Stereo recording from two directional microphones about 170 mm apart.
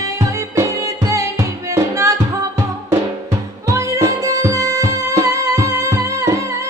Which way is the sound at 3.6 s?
20° right (ahead or behind).